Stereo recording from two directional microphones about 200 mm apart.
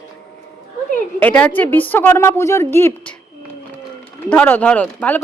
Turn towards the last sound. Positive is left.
turn(degrees=5)  # may be behind; listen again after turning